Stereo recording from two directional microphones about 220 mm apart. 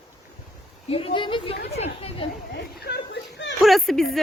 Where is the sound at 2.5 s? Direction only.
50° left (ahead or behind).